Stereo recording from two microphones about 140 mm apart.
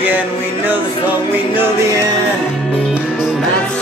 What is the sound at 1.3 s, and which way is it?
Speech, 15° right (ahead or behind).